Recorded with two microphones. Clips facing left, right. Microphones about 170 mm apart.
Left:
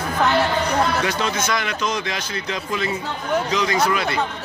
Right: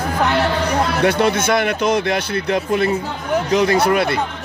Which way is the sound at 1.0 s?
60° right (ahead or behind).